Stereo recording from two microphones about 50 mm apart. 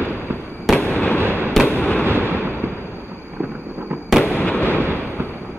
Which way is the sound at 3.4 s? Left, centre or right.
Right.